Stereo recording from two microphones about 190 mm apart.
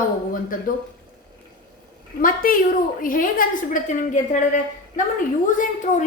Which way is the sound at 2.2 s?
45° left (ahead or behind).